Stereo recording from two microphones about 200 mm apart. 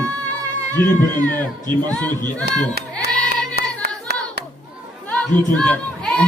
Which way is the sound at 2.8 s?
50° right (ahead or behind).